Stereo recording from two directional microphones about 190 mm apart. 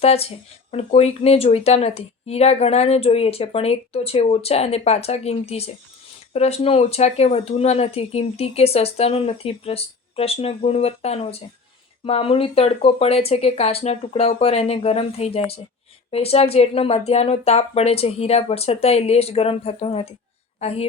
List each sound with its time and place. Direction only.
0.0 s a woman's voice: 30° left (ahead or behind)